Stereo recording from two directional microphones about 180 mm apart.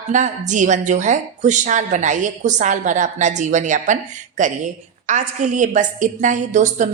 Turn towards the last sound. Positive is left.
turn(degrees=-45)  # may be behind; listen again after turning